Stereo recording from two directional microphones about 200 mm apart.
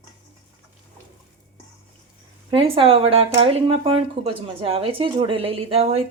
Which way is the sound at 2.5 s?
25° right (ahead or behind).